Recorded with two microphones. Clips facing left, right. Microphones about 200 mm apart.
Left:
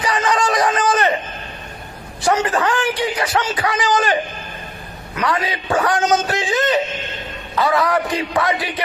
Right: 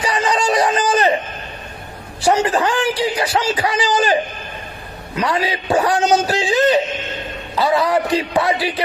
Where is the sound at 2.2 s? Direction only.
30° right (ahead or behind).